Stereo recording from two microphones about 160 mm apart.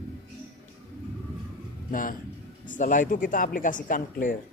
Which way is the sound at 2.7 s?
55° left (ahead or behind).